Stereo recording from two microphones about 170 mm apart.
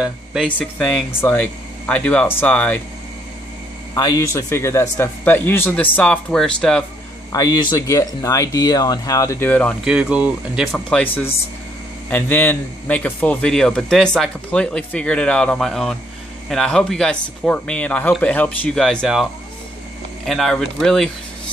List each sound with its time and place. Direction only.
0.0 s speech: 5° right (ahead or behind)
0.5 s a man's voice: 10° left (ahead or behind)
3.9 s a man's voice: 20° left (ahead or behind)
7.3 s speech: 20° left (ahead or behind)
9.8 s speech: 5° right (ahead or behind)
12.1 s a man's voice: 10° left (ahead or behind)
20.2 s speech: centre (ahead or behind)